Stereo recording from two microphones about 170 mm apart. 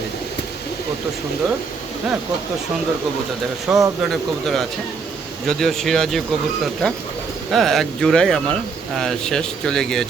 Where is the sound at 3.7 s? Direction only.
5° right (ahead or behind).